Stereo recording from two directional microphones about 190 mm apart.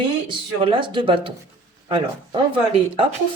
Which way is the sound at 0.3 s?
25° right (ahead or behind).